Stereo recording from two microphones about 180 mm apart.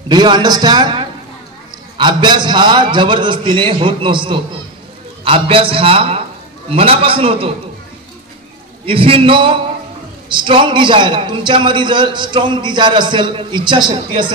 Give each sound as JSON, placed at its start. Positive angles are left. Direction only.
{"t": 0.1, "sound": "a man's voice", "side_deg": -25}
{"t": 8.8, "sound": "a man's voice", "side_deg": -30}